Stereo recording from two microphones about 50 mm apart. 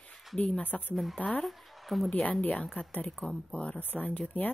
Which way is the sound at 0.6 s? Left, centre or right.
Left.